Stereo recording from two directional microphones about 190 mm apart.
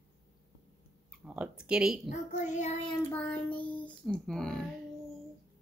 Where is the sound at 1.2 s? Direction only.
5° right (ahead or behind).